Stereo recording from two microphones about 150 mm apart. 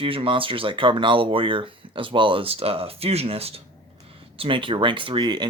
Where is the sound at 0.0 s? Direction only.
35° right (ahead or behind).